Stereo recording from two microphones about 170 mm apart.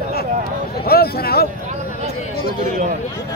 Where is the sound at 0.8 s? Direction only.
65° left (ahead or behind).